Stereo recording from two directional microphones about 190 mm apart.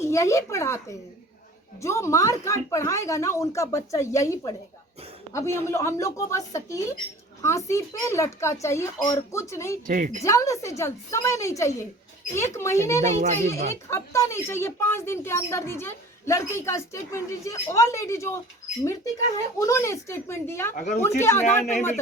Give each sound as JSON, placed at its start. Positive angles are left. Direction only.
{"t": 0.0, "sound": "speech", "side_deg": 15}
{"t": 9.8, "sound": "speech", "side_deg": -45}
{"t": 10.2, "sound": "speech", "side_deg": 15}
{"t": 13.0, "sound": "a child's voice", "side_deg": -35}
{"t": 13.9, "sound": "speech", "side_deg": 15}
{"t": 19.5, "sound": "speech", "side_deg": 15}
{"t": 20.7, "sound": "speech", "side_deg": 40}
{"t": 21.0, "sound": "speech", "side_deg": 15}